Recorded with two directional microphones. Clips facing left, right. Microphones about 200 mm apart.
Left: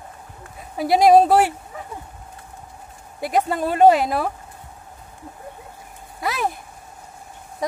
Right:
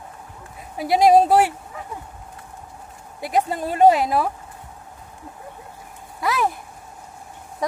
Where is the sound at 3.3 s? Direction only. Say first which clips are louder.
Left 1 dB; 60° left (ahead or behind).